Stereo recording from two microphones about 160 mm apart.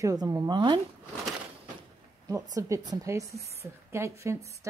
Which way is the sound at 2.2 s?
20° right (ahead or behind).